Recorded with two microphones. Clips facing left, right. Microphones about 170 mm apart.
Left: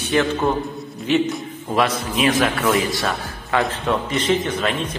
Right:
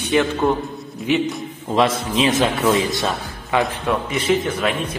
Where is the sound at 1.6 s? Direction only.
25° right (ahead or behind).